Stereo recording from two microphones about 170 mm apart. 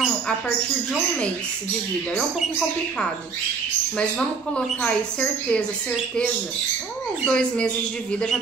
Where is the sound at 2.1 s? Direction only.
5° left (ahead or behind).